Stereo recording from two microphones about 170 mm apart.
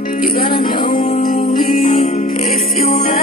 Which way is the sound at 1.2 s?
55° left (ahead or behind).